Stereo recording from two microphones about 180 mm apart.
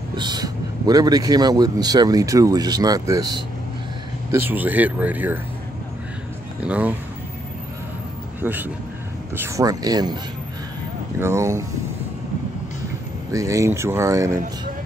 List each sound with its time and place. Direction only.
0.1 s speech: 25° right (ahead or behind)
6.6 s speech: 10° right (ahead or behind)
8.4 s speech: 10° right (ahead or behind)
11.1 s speech: 15° right (ahead or behind)
13.3 s speech: 15° right (ahead or behind)